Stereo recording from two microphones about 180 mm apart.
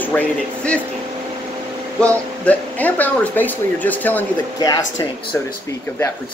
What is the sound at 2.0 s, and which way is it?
Speech, 5° left (ahead or behind).